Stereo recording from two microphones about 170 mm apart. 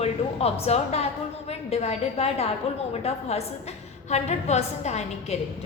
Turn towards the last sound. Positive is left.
turn(degrees=40)  # may be behind; listen again after turning